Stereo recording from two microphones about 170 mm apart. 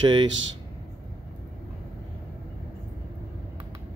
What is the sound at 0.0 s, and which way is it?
Speech, 25° right (ahead or behind).